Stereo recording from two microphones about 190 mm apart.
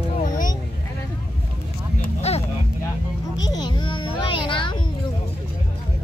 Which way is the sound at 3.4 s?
20° left (ahead or behind).